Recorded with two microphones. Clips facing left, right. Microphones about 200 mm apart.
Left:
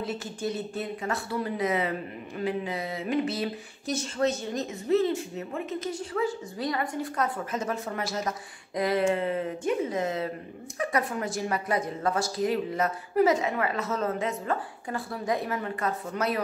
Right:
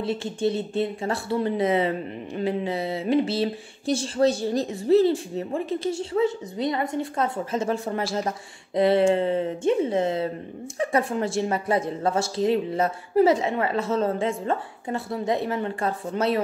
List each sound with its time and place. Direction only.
0.0 s speech: 25° right (ahead or behind)